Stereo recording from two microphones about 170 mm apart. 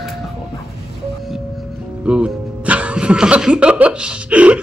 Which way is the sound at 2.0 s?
5° right (ahead or behind).